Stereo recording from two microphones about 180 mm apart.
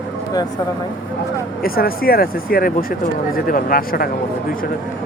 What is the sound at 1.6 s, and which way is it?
Speech, 55° left (ahead or behind).